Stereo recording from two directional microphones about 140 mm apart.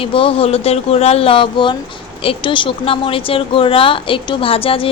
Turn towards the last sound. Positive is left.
turn(degrees=40)  # may be behind; listen again after turning